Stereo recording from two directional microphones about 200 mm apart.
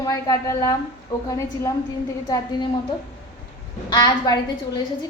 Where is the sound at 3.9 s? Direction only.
20° left (ahead or behind).